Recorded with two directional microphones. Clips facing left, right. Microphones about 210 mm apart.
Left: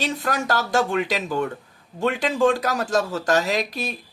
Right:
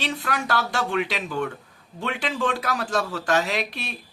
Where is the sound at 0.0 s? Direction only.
40° left (ahead or behind).